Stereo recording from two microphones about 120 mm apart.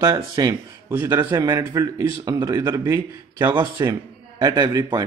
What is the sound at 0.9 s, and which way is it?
A man's voice, 20° right (ahead or behind).